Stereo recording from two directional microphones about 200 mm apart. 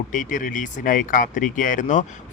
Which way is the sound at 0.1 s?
40° left (ahead or behind).